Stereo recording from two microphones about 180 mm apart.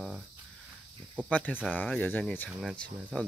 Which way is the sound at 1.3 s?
10° left (ahead or behind).